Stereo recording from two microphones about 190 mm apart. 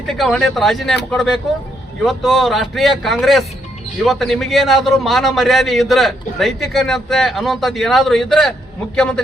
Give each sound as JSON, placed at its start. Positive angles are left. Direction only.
{"t": 0.1, "sound": "a man's voice", "side_deg": 0}